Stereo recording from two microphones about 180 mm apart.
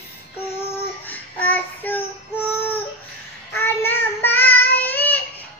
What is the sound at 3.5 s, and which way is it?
Child singing, 10° left (ahead or behind).